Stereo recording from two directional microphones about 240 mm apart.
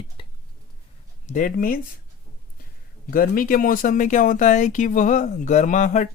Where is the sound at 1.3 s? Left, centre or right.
Left.